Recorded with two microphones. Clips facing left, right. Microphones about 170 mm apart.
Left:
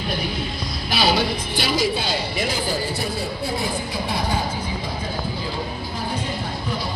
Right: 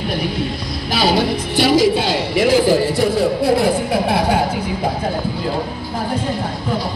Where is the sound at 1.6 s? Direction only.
80° right.